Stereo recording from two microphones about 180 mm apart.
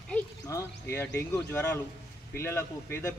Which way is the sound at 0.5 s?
15° left (ahead or behind).